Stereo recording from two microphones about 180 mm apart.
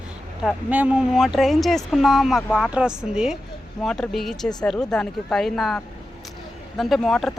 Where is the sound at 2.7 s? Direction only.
5° right (ahead or behind).